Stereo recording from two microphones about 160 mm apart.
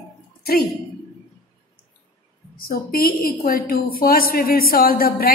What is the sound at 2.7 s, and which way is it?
A woman's voice, 65° left (ahead or behind).